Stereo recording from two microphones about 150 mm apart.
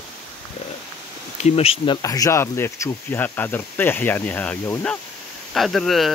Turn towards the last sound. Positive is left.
turn(degrees=0)  # may be behind; listen again after turning